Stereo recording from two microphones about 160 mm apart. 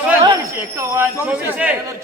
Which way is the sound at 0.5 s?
15° right (ahead or behind).